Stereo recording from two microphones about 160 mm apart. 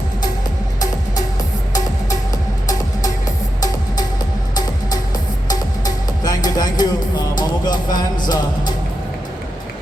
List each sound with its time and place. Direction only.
5.5 s music: 25° left (ahead or behind)